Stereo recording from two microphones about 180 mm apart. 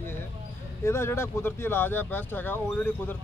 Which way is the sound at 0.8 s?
15° left (ahead or behind).